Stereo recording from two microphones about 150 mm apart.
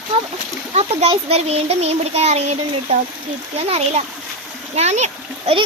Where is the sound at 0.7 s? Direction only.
45° right (ahead or behind).